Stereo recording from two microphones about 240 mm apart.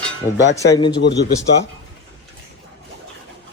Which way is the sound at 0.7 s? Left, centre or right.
Centre.